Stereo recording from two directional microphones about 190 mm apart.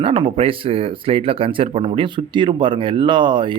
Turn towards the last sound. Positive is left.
turn(degrees=-25)  # may be behind; listen again after turning